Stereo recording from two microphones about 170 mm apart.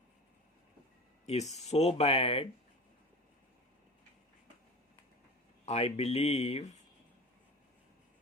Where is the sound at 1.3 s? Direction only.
40° left (ahead or behind).